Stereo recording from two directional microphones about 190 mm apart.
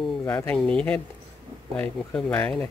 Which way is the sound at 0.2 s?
10° left (ahead or behind).